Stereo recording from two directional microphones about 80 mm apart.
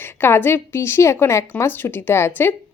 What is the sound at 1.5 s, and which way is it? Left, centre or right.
Speech, left.